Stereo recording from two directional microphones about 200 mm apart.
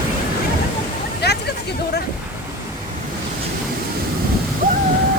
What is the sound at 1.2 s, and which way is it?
Hubbub, 55° left (ahead or behind).